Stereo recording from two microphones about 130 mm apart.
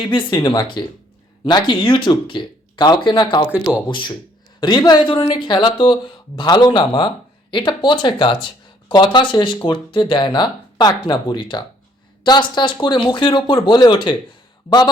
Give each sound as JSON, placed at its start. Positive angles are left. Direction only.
{"t": 0.0, "sound": "speech", "side_deg": 40}